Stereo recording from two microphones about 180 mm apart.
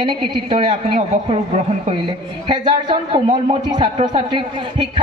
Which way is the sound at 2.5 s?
25° right (ahead or behind).